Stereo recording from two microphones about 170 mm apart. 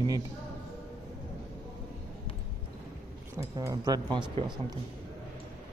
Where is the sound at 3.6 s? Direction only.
20° right (ahead or behind).